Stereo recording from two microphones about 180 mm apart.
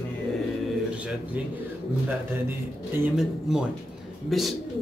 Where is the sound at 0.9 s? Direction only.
5° right (ahead or behind).